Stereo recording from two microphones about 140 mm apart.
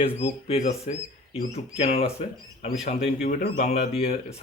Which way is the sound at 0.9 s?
55° left (ahead or behind).